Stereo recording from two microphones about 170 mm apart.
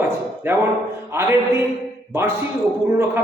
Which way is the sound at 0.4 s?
15° right (ahead or behind).